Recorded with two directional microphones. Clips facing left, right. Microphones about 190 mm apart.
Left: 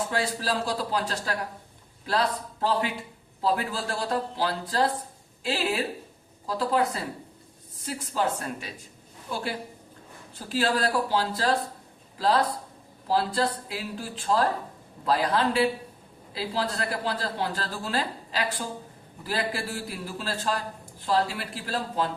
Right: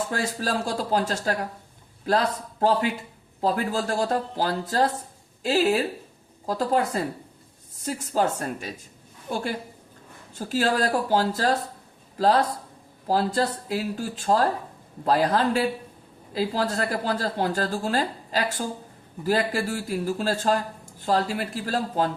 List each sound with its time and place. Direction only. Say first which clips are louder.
0.1 s speech: right 1 dB; 45° right (ahead or behind)
8.1 s speech: right 3 dB; 45° right (ahead or behind)